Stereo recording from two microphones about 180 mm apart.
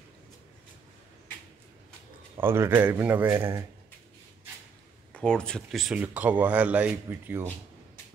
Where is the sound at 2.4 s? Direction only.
15° right (ahead or behind).